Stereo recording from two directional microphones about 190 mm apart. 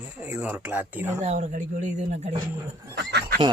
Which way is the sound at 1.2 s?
40° right (ahead or behind).